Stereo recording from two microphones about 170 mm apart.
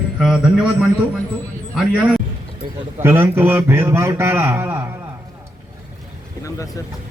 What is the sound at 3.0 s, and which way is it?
Mantra, 15° right (ahead or behind).